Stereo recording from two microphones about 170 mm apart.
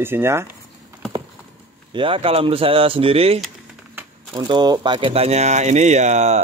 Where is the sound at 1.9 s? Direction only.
30° right (ahead or behind).